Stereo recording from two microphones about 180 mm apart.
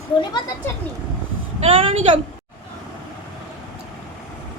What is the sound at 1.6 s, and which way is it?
Speech, 35° right (ahead or behind).